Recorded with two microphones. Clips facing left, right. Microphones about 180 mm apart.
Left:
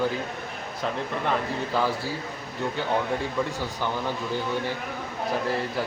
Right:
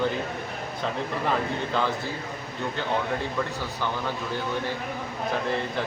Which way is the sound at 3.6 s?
15° left (ahead or behind).